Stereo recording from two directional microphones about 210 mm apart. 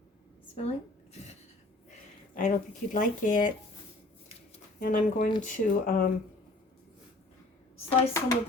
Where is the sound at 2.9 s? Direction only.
40° left (ahead or behind).